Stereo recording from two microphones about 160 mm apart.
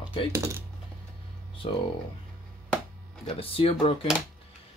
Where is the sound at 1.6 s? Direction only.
35° left (ahead or behind).